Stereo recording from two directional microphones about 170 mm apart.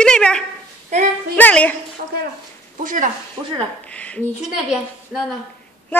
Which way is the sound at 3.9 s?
5° left (ahead or behind).